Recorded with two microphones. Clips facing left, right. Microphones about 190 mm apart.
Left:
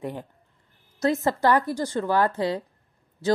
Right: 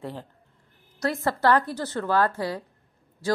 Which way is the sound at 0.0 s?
15° left (ahead or behind).